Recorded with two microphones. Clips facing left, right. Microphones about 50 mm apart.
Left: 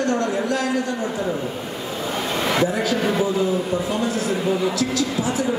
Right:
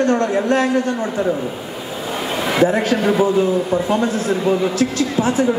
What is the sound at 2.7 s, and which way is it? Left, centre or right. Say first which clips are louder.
A man's voice: right 5 dB; right.